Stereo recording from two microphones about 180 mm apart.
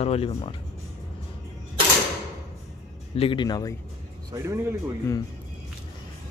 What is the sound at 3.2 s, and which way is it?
Speech, 30° left (ahead or behind).